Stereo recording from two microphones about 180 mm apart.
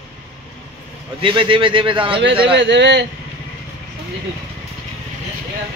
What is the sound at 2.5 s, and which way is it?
Speech, 75° right (ahead or behind).